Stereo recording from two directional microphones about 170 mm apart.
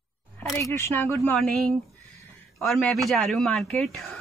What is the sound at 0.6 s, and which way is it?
Speech, 15° left (ahead or behind).